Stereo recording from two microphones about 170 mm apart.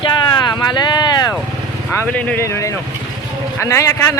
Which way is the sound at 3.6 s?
15° left (ahead or behind).